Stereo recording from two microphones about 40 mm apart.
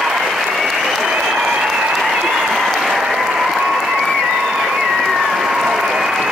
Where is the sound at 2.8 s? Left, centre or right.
Centre.